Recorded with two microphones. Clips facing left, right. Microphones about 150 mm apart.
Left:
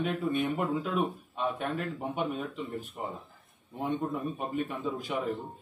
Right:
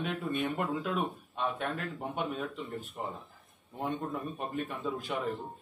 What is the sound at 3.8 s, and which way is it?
Speech, centre (ahead or behind).